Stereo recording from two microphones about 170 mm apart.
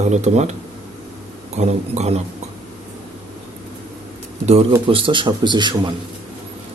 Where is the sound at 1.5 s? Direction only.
40° right (ahead or behind).